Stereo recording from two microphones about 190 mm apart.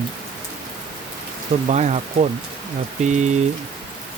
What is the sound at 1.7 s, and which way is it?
Speech, 40° right (ahead or behind).